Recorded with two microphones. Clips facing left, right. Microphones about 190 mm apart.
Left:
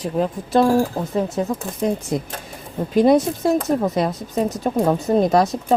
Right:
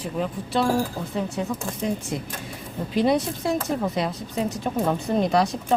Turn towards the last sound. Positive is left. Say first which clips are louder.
# left 5 dB
turn(degrees=40)  # may be behind; listen again after turning